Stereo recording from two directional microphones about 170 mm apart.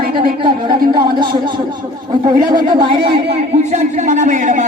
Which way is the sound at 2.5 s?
30° right (ahead or behind).